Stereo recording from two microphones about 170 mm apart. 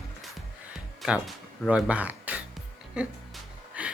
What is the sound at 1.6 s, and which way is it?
Speech, 5° right (ahead or behind).